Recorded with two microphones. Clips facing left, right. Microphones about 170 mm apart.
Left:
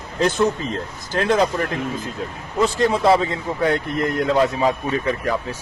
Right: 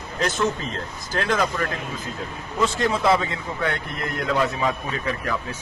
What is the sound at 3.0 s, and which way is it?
A man's voice, 35° left (ahead or behind).